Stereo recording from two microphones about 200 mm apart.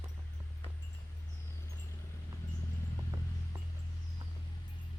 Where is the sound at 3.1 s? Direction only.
15° right (ahead or behind).